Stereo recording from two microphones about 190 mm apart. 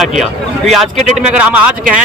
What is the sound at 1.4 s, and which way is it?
Speech, 5° right (ahead or behind).